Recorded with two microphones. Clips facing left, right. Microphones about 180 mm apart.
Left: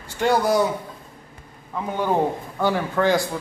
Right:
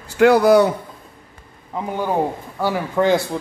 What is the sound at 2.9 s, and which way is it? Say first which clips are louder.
Speech: right 5 dB; 20° right (ahead or behind).